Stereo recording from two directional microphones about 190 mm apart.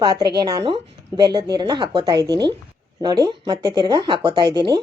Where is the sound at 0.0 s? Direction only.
20° right (ahead or behind).